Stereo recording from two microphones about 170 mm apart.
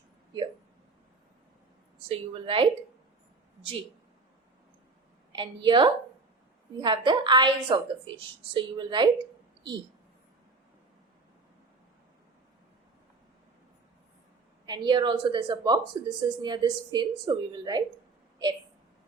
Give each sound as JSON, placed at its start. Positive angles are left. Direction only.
{"t": 2.0, "sound": "a woman's voice", "side_deg": -30}
{"t": 5.3, "sound": "a woman's voice", "side_deg": -25}
{"t": 14.7, "sound": "a woman's voice", "side_deg": -25}